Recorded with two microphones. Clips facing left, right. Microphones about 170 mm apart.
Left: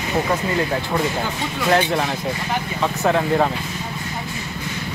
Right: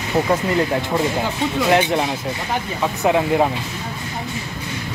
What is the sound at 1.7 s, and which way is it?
Speech, 15° right (ahead or behind).